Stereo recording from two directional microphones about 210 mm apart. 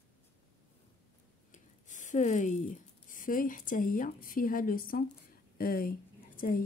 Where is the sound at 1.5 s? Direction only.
35° left (ahead or behind).